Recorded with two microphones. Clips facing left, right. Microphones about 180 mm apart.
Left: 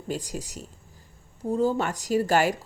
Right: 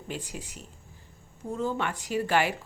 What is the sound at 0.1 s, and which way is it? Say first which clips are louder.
Speech: left 6 dB; 40° left (ahead or behind).